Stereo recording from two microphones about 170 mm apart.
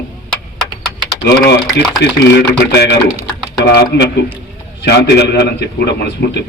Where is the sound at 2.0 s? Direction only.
80° left.